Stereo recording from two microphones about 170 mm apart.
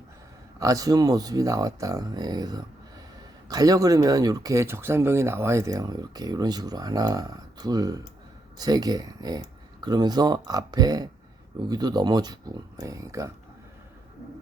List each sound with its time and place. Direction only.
0.6 s speech: 20° right (ahead or behind)